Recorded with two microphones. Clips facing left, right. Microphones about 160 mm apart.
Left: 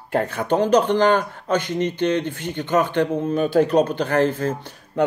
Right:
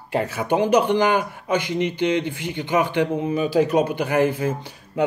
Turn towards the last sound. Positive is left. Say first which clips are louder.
# left 1 dB
turn(degrees=-10)  # may be behind; listen again after turning